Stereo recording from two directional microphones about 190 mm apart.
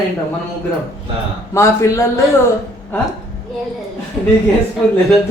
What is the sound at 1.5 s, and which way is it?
Speech, 15° left (ahead or behind).